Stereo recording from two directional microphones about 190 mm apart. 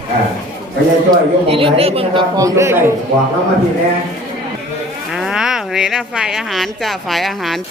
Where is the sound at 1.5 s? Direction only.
30° right (ahead or behind).